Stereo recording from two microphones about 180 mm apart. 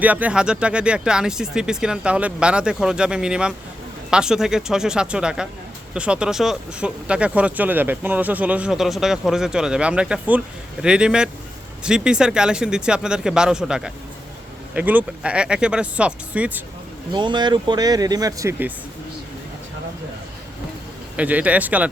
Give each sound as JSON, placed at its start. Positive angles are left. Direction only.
{"t": 0.0, "sound": "speech", "side_deg": -10}
{"t": 17.1, "sound": "speech", "side_deg": -25}
{"t": 21.2, "sound": "speech", "side_deg": -10}